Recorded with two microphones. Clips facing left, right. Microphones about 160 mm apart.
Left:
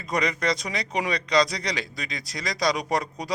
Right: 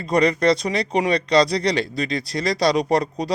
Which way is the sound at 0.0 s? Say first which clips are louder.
Right 8 dB; 30° right (ahead or behind).